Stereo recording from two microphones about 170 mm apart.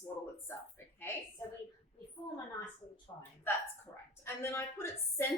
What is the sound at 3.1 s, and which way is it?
Speech, 30° left (ahead or behind).